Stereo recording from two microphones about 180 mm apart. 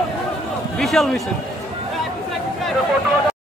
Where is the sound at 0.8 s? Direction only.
Centre (ahead or behind).